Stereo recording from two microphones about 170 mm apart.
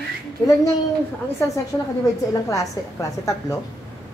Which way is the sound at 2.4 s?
20° left (ahead or behind).